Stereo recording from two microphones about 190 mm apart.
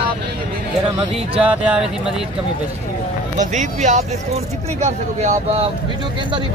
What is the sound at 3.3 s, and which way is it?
Speech, 40° right (ahead or behind).